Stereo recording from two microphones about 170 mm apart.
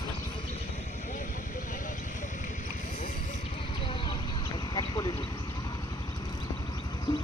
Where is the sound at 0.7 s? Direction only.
45° left (ahead or behind).